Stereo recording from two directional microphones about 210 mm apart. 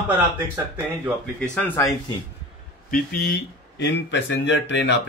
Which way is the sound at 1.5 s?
10° left (ahead or behind).